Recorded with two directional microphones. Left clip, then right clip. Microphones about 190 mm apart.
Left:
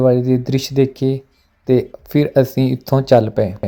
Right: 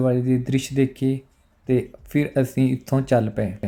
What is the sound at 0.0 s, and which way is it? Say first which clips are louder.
Speech: left 8 dB; 15° left (ahead or behind).